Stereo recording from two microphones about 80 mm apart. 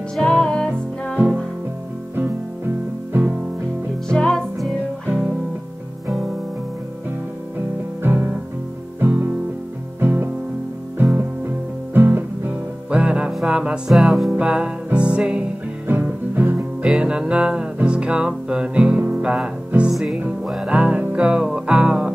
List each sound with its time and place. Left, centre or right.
0.1 s music: centre
3.1 s music: right
4.1 s music: centre
8.0 s music: right
9.9 s music: right
13.0 s music: centre
14.3 s music: centre
15.9 s music: right
16.8 s music: centre
20.7 s music: centre